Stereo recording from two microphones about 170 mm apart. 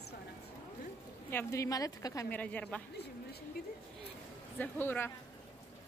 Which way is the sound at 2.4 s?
10° left (ahead or behind).